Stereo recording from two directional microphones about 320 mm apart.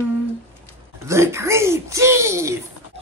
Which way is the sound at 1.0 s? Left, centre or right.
Centre.